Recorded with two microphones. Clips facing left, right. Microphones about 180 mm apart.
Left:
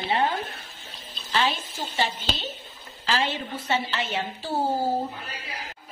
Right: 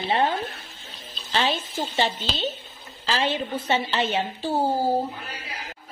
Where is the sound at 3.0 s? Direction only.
20° right (ahead or behind).